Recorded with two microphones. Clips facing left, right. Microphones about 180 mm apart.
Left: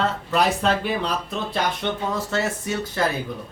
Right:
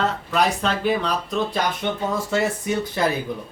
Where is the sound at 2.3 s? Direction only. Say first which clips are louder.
Right 3 dB; 15° right (ahead or behind).